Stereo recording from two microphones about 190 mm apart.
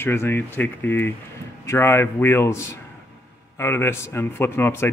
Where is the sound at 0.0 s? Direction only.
10° left (ahead or behind).